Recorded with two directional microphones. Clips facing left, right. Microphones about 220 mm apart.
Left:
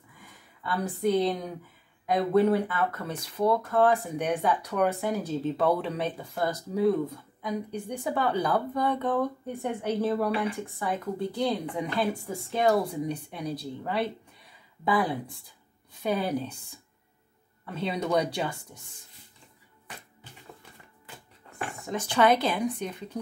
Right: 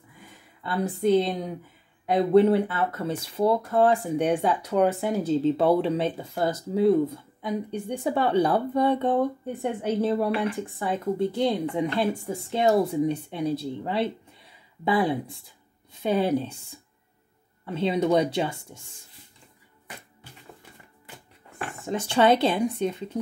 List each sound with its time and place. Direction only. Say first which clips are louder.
0.2 s a woman's voice: right 1 dB; 25° right (ahead or behind)
17.7 s speech: right 5 dB; 25° right (ahead or behind)
21.8 s speech: right 3 dB; 25° right (ahead or behind)